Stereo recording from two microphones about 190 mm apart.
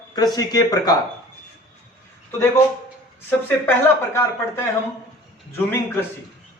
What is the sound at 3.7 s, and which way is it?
Speech, 10° left (ahead or behind).